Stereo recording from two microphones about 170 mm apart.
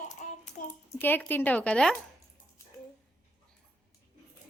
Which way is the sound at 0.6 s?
50° left (ahead or behind).